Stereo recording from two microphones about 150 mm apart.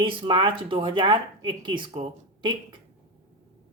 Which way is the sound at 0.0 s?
35° right (ahead or behind).